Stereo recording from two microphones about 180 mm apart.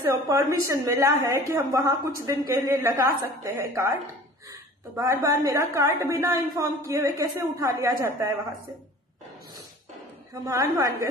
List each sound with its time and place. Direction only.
0.0 s a woman's voice: 15° right (ahead or behind)
10.4 s a woman's voice: 20° right (ahead or behind)